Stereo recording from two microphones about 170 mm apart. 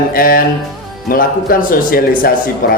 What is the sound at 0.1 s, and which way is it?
A man's voice, 60° left (ahead or behind).